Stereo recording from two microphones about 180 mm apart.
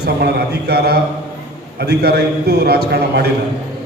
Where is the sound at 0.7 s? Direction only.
60° right (ahead or behind).